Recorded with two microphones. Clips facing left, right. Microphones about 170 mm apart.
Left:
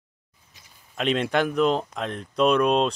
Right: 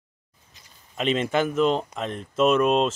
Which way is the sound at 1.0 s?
Centre (ahead or behind).